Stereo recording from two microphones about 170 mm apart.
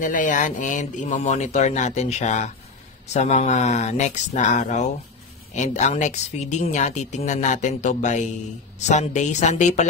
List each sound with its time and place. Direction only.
0.0 s speech: 50° left (ahead or behind)